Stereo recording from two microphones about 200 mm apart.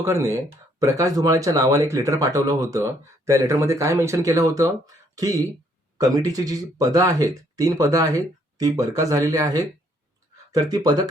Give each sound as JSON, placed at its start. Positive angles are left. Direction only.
{"t": 0.0, "sound": "speech", "side_deg": -15}